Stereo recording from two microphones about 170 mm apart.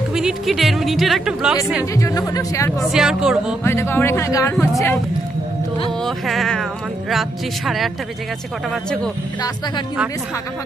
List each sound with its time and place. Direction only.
0.1 s speech: 5° right (ahead or behind)
2.0 s speech: 20° left (ahead or behind)
2.8 s speech: 5° right (ahead or behind)
3.6 s speech: 15° left (ahead or behind)
5.9 s speech: centre (ahead or behind)